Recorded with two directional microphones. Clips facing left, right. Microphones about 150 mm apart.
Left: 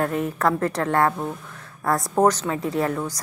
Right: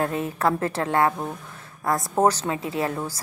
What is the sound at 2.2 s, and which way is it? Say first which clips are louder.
Speech: left 2 dB; 30° right (ahead or behind).